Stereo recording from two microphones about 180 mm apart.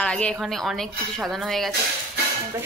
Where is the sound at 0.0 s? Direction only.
5° left (ahead or behind).